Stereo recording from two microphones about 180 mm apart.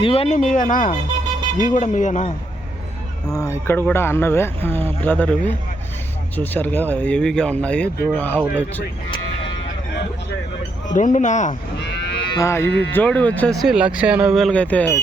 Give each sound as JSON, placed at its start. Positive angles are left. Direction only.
{"t": 0.0, "sound": "speech", "side_deg": 30}
{"t": 0.3, "sound": "a man's voice", "side_deg": 45}
{"t": 3.3, "sound": "speech", "side_deg": 15}
{"t": 10.9, "sound": "a man's voice", "side_deg": 45}
{"t": 11.8, "sound": "moo", "side_deg": 70}
{"t": 12.3, "sound": "speech", "side_deg": 15}
{"t": 13.6, "sound": "speech", "side_deg": -5}